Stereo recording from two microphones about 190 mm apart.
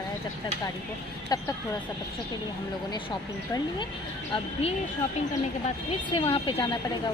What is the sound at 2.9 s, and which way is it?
Speech, 20° left (ahead or behind).